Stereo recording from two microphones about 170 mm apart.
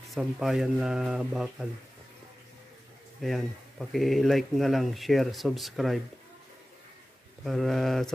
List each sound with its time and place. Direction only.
0.1 s speech: centre (ahead or behind)
3.2 s speech: centre (ahead or behind)
7.4 s speech: centre (ahead or behind)